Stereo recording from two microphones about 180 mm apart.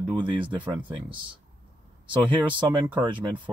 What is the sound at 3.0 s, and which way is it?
Speech, 25° right (ahead or behind).